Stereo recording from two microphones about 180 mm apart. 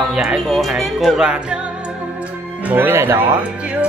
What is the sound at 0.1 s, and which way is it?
Speech, 5° right (ahead or behind).